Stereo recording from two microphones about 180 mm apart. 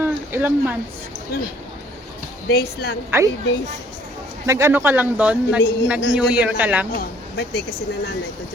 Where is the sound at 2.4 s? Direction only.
65° left (ahead or behind).